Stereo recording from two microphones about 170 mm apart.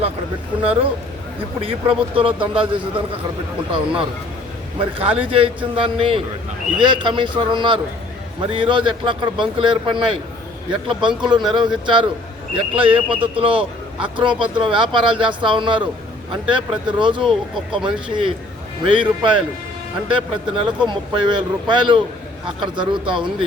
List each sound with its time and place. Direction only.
0.6 s a man's voice: 35° right (ahead or behind)
4.8 s a man's voice: 35° right (ahead or behind)